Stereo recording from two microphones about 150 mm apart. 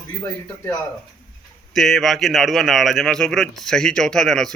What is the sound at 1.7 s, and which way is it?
A man's voice, centre (ahead or behind).